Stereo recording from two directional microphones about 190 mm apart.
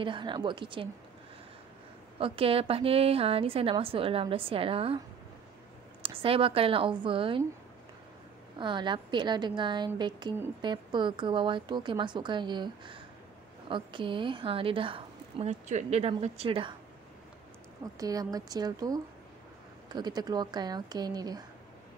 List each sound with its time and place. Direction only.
0.0 s a woman's voice: 25° right (ahead or behind)
2.1 s a woman's voice: 30° right (ahead or behind)
6.0 s a woman's voice: 30° right (ahead or behind)
8.5 s a woman's voice: 25° right (ahead or behind)
17.9 s a woman's voice: 20° right (ahead or behind)